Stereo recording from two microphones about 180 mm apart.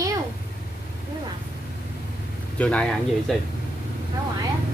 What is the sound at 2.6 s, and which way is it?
Speech, 5° left (ahead or behind).